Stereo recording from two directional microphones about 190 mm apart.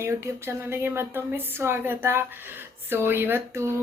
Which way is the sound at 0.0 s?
15° right (ahead or behind).